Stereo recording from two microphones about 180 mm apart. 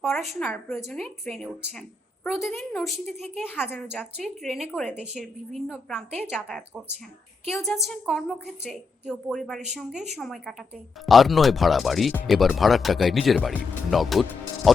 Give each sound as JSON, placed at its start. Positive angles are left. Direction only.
{"t": 0.1, "sound": "a woman's voice", "side_deg": 0}
{"t": 3.5, "sound": "a woman's voice", "side_deg": 10}
{"t": 3.9, "sound": "speech", "side_deg": 0}
{"t": 4.7, "sound": "a woman's voice", "side_deg": 10}
{"t": 4.9, "sound": "speech", "side_deg": 0}
{"t": 7.4, "sound": "speech", "side_deg": 0}